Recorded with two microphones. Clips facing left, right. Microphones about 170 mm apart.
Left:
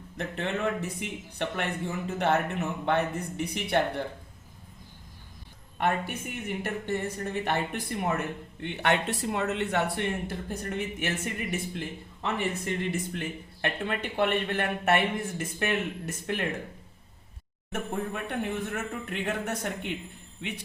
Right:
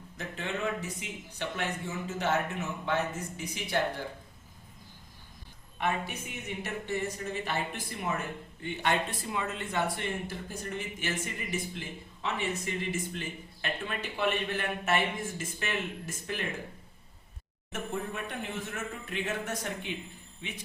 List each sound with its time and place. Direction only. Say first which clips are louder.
0.2 s speech: left 4 dB; 60° left (ahead or behind)
5.7 s a woman's voice: left 4 dB; 55° left (ahead or behind)
17.7 s speech: left 3 dB; 55° left (ahead or behind)